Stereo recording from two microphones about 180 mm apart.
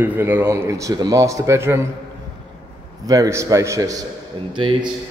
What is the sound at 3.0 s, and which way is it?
A man's voice, 20° right (ahead or behind).